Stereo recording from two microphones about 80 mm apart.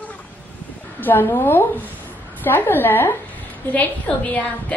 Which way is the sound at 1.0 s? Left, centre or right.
Left.